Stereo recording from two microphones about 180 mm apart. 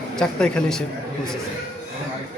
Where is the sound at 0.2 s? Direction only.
5° left (ahead or behind).